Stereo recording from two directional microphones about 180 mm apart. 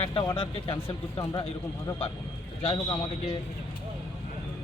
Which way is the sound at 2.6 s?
30° left (ahead or behind).